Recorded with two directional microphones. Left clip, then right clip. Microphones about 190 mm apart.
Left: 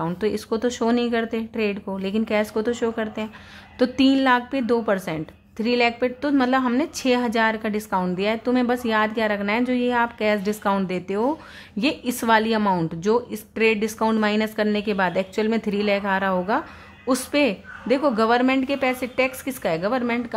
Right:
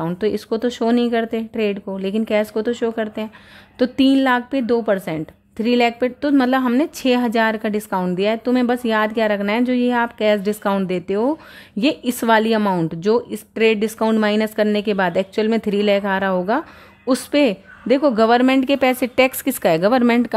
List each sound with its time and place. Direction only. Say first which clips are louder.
0.0 s a woman's voice: right 3 dB; 20° right (ahead or behind)